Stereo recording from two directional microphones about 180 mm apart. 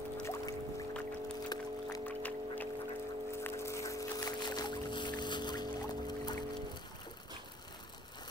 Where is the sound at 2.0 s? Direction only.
10° left (ahead or behind).